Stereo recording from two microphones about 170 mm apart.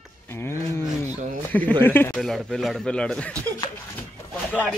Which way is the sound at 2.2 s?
Centre (ahead or behind).